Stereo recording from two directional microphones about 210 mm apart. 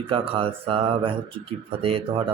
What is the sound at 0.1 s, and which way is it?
Speech, 25° right (ahead or behind).